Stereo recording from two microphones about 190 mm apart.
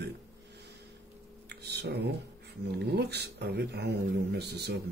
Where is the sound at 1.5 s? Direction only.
60° right (ahead or behind).